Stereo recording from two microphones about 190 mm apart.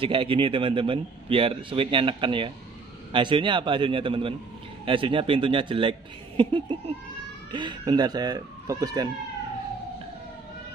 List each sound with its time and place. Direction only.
0.0 s speech: 30° right (ahead or behind)